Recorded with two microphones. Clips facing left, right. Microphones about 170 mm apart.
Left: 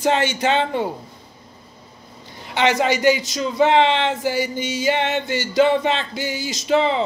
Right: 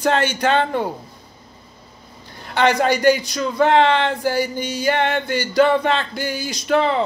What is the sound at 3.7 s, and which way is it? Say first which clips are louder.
Speech: right 1 dB; 50° right (ahead or behind).